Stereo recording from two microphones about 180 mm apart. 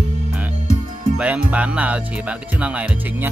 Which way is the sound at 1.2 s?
5° right (ahead or behind).